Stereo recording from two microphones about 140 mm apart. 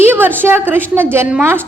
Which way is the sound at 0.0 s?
15° right (ahead or behind).